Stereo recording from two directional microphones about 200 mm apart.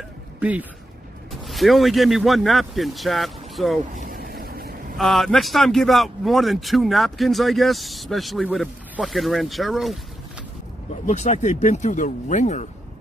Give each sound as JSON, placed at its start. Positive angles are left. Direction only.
{"t": 0.4, "sound": "a man's voice", "side_deg": -5}
{"t": 4.1, "sound": "vehicle", "side_deg": -50}
{"t": 4.9, "sound": "a man's voice", "side_deg": 0}
{"t": 11.1, "sound": "speech", "side_deg": 35}